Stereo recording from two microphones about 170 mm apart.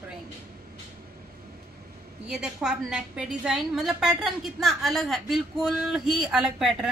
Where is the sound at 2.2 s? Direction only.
5° right (ahead or behind).